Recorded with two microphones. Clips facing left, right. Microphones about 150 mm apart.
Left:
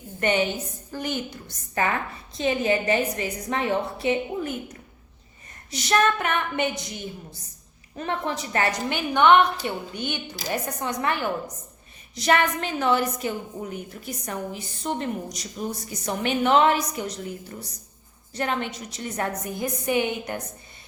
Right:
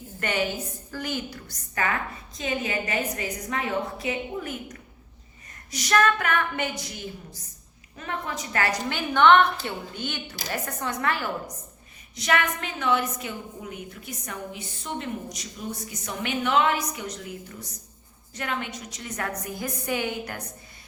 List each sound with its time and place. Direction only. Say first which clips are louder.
0.2 s a woman's voice: left 4 dB; 20° left (ahead or behind)
12.1 s a woman's voice: left 4 dB; 35° left (ahead or behind)